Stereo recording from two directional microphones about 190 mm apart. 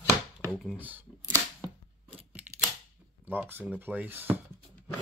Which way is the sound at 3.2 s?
10° right (ahead or behind).